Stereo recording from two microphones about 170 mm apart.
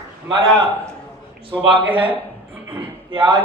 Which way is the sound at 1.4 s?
30° right (ahead or behind).